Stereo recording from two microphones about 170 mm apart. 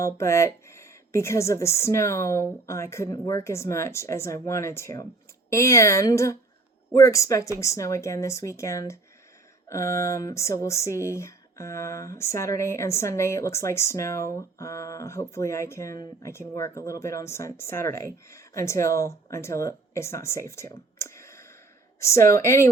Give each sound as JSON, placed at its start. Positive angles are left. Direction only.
{"t": 0.0, "sound": "speech", "side_deg": 15}